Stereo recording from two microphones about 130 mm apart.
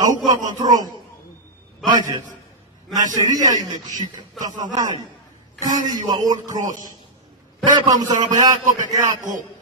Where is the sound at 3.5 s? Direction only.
35° right (ahead or behind).